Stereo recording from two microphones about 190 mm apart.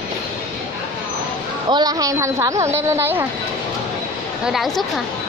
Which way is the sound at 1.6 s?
20° right (ahead or behind).